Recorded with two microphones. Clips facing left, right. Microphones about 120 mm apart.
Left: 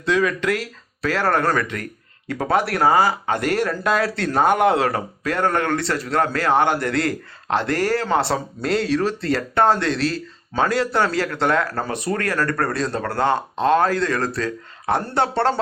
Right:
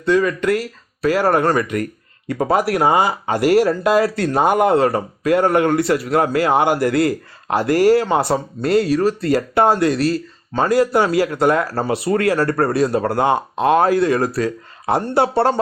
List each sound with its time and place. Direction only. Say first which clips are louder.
0.0 s speech: right 4 dB; centre (ahead or behind)
2.7 s speech: right 1 dB; 20° right (ahead or behind)
3.3 s speech: right 7 dB; 10° right (ahead or behind)